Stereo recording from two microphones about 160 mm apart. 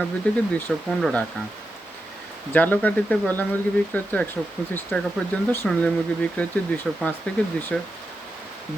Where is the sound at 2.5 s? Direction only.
10° left (ahead or behind).